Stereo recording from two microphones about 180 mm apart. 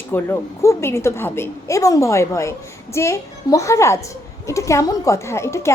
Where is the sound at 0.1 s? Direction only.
15° left (ahead or behind).